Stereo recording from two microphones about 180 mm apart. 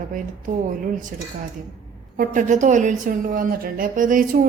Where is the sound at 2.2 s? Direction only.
45° right (ahead or behind).